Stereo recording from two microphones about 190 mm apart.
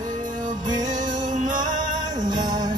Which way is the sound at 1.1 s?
40° right (ahead or behind).